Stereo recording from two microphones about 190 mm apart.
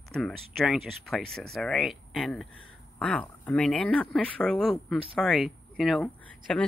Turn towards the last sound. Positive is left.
turn(degrees=5)  # may be behind; listen again after turning